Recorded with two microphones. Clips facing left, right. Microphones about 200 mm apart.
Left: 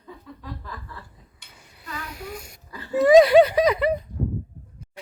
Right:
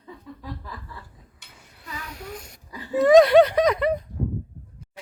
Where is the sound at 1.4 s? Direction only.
5° right (ahead or behind).